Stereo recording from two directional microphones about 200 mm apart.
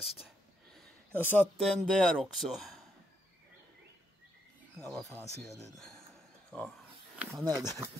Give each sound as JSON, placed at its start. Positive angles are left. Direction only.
{"t": 0.7, "sound": "speech", "side_deg": 10}
{"t": 4.7, "sound": "speech", "side_deg": 0}
{"t": 6.5, "sound": "a sound", "side_deg": 0}
{"t": 7.2, "sound": "speech", "side_deg": -15}